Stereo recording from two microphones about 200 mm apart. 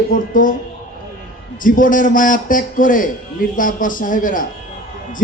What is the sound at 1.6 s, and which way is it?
A man's voice, 40° left (ahead or behind).